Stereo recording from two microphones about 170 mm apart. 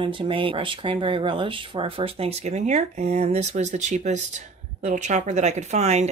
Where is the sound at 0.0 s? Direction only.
30° right (ahead or behind).